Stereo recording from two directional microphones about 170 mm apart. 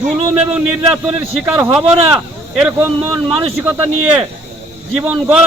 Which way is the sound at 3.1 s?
30° right (ahead or behind).